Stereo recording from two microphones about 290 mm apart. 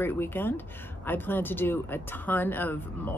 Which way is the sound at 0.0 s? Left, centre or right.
Centre.